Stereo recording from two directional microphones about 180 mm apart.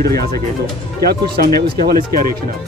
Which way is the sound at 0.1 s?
20° left (ahead or behind).